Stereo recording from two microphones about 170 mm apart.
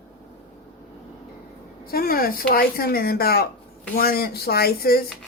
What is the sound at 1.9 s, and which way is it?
Speech, 60° left (ahead or behind).